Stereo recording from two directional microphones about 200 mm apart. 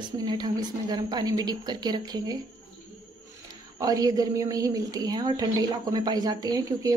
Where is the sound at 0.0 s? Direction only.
20° right (ahead or behind).